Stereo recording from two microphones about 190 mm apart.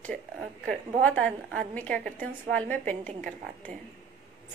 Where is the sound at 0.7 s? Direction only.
5° left (ahead or behind).